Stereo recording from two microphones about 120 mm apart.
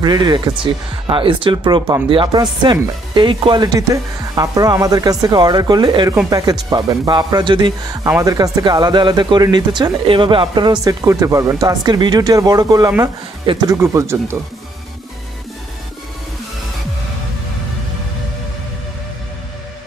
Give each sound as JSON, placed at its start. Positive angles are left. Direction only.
{"t": 0.0, "sound": "speech", "side_deg": -35}
{"t": 1.0, "sound": "speech", "side_deg": -45}
{"t": 3.6, "sound": "speech", "side_deg": -30}
{"t": 8.2, "sound": "speech", "side_deg": -30}
{"t": 10.8, "sound": "speech", "side_deg": -30}
{"t": 11.6, "sound": "speech", "side_deg": -35}